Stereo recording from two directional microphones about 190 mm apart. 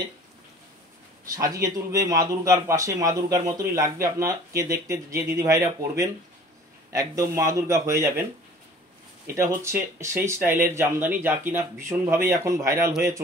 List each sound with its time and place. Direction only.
1.3 s a man's voice: 20° right (ahead or behind)
9.3 s a man's voice: 15° right (ahead or behind)